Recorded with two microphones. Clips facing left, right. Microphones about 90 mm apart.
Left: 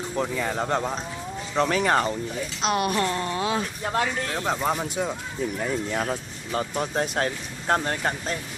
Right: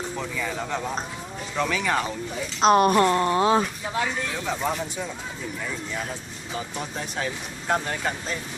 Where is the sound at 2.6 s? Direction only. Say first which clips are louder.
Right 7 dB; 40° right (ahead or behind).